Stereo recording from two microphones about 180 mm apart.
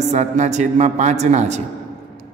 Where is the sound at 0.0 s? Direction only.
40° right (ahead or behind).